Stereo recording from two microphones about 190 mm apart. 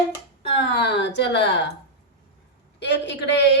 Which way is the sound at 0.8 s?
65° left (ahead or behind).